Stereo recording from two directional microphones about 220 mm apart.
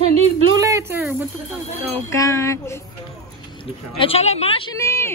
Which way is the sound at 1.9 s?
15° left (ahead or behind).